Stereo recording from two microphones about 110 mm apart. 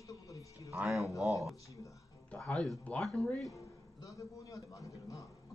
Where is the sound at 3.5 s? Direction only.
30° left (ahead or behind).